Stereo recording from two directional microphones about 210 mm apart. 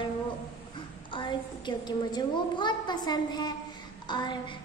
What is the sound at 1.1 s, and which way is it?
A woman's voice, 20° left (ahead or behind).